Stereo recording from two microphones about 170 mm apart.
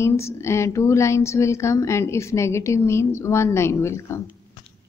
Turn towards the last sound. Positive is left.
turn(degrees=15)  # may be behind; listen again after turning